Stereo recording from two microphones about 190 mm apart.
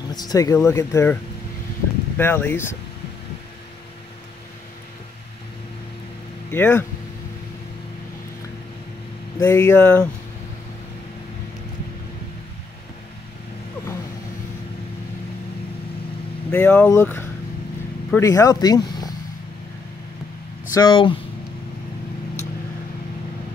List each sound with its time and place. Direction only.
0.1 s speech: 20° left (ahead or behind)
2.1 s speech: 10° left (ahead or behind)
6.5 s speech: 10° left (ahead or behind)
9.4 s speech: 15° left (ahead or behind)
16.4 s speech: 5° left (ahead or behind)
20.7 s speech: 25° left (ahead or behind)